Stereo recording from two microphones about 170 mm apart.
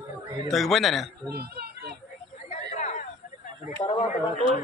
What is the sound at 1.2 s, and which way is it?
Speech, 65° right (ahead or behind).